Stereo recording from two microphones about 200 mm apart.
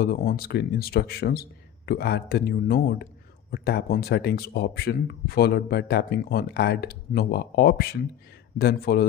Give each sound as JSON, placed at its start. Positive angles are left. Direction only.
{"t": 0.0, "sound": "speech", "side_deg": 50}